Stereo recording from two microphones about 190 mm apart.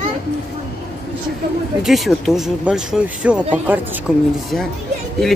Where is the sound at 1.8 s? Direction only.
Centre (ahead or behind).